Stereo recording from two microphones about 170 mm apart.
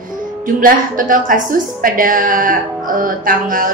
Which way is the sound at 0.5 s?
55° right (ahead or behind).